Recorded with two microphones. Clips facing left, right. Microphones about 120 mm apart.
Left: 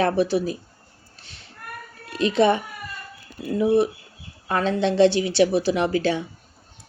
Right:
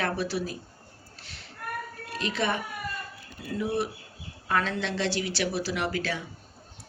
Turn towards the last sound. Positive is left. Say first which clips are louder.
# left 8 dB
turn(degrees=25)  # may be behind; listen again after turning